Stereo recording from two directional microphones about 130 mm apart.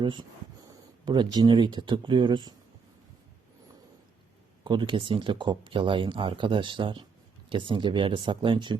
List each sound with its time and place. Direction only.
0.0 s speech: 35° right (ahead or behind)
4.6 s speech: 35° right (ahead or behind)